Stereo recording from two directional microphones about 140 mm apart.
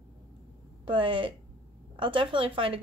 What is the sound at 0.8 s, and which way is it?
A woman's voice, 35° right (ahead or behind).